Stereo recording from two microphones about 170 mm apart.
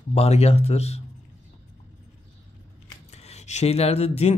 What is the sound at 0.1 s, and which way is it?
Speech, 35° left (ahead or behind).